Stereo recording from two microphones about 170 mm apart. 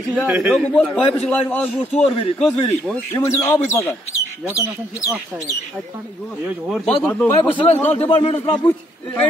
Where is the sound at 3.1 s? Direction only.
20° left (ahead or behind).